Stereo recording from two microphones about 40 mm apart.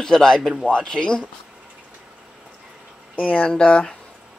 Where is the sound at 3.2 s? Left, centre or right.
Left.